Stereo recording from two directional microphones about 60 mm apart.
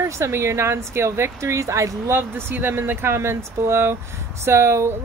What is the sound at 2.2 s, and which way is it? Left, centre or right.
Speech, right.